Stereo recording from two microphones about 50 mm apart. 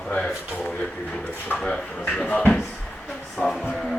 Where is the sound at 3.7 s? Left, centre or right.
Centre.